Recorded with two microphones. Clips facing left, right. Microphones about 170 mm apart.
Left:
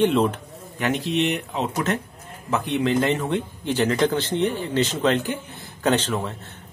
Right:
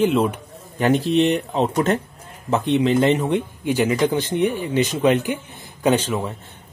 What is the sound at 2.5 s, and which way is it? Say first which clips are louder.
A man's voice: right 4 dB; 20° right (ahead or behind).